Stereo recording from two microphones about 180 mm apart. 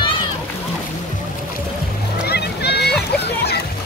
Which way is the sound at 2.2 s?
65° left (ahead or behind).